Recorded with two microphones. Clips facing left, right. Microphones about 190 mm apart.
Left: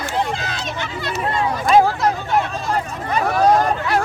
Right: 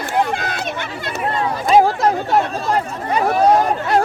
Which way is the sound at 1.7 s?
30° right (ahead or behind).